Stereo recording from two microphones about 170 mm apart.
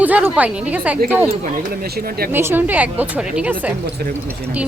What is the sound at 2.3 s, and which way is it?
A woman's voice, 15° right (ahead or behind).